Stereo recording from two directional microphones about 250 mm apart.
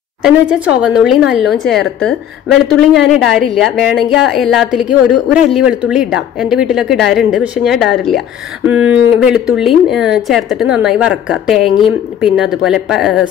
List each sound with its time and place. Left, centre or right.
0.2 s a woman's voice: centre